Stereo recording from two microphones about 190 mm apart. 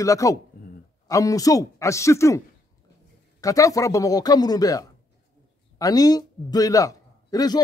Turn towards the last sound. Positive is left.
turn(degrees=20)  # may be behind; listen again after turning